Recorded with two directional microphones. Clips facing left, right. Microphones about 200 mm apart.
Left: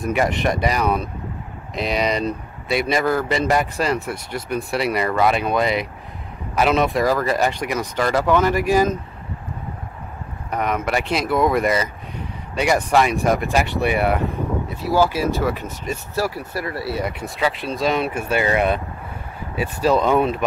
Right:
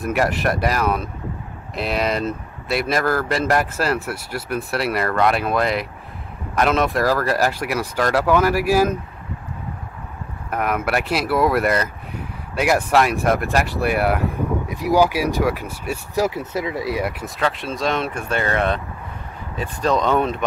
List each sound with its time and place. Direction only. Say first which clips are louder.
0.0 s speech: even; centre (ahead or behind)
10.5 s speech: even; 5° right (ahead or behind)
14.7 s speech: right 2 dB; 15° right (ahead or behind)
16.3 s speech: right 3 dB; 20° right (ahead or behind)
17.0 s speech: even; centre (ahead or behind)